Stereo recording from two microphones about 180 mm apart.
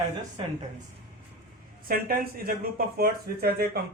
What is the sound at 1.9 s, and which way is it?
Speech, 55° right (ahead or behind).